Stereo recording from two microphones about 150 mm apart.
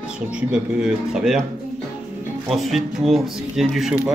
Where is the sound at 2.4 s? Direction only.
Centre (ahead or behind).